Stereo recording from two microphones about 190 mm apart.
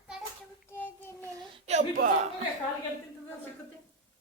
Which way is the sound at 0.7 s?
10° left (ahead or behind).